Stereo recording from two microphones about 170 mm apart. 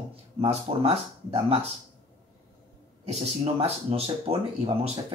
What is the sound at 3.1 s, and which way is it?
Speech, 35° right (ahead or behind).